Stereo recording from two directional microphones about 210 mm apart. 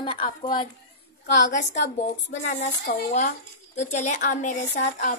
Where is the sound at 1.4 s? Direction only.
35° left (ahead or behind).